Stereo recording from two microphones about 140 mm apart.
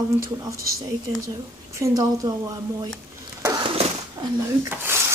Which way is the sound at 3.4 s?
30° right (ahead or behind).